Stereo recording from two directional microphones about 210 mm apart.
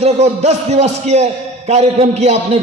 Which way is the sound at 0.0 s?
30° right (ahead or behind).